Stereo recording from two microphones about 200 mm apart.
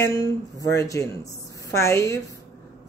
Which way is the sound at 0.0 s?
15° left (ahead or behind).